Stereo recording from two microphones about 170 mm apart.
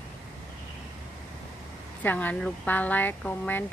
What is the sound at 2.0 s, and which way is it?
Speech, 10° left (ahead or behind).